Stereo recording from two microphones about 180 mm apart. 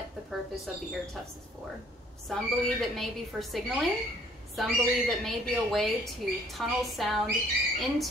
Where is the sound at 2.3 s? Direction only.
Centre (ahead or behind).